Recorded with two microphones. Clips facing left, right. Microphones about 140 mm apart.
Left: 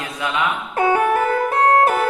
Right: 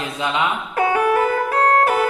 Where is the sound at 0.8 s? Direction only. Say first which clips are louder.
Even; 25° left (ahead or behind).